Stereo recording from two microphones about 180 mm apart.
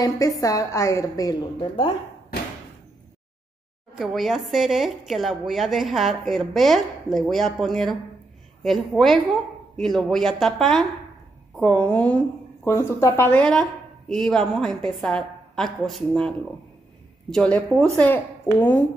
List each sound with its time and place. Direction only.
0.0 s a woman's voice: 20° left (ahead or behind)
3.9 s a woman's voice: centre (ahead or behind)